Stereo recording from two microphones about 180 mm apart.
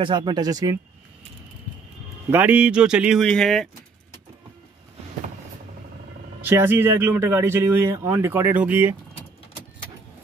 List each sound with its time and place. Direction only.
0.0 s speech: 25° right (ahead or behind)
2.3 s speech: 10° right (ahead or behind)
6.5 s speech: 15° right (ahead or behind)